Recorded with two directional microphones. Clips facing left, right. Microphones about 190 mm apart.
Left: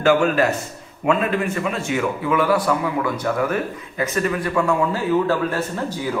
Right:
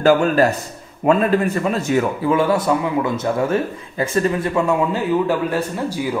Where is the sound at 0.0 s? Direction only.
35° right (ahead or behind).